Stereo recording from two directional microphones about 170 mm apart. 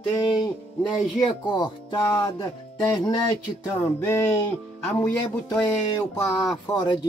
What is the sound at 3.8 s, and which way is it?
Music, 15° left (ahead or behind).